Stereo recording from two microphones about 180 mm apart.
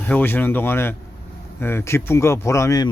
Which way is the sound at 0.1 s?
10° left (ahead or behind).